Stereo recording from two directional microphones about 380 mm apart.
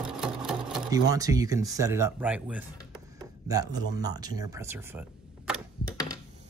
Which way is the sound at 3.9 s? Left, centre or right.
Centre.